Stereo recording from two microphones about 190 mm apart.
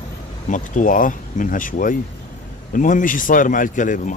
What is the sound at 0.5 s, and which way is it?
Speech, 45° left (ahead or behind).